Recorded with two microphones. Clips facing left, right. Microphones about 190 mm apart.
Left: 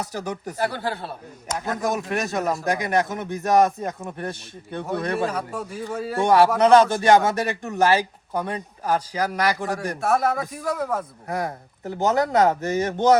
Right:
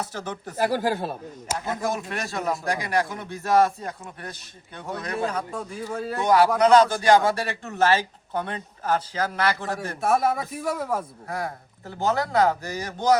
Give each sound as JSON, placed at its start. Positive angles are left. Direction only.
{"t": 0.1, "sound": "a man's voice", "side_deg": 15}
{"t": 0.6, "sound": "speech", "side_deg": -10}
{"t": 1.8, "sound": "speech", "side_deg": 20}
{"t": 5.3, "sound": "speech", "side_deg": 5}
{"t": 6.1, "sound": "a man's voice", "side_deg": 25}
{"t": 10.0, "sound": "speech", "side_deg": 0}
{"t": 11.3, "sound": "speech", "side_deg": 20}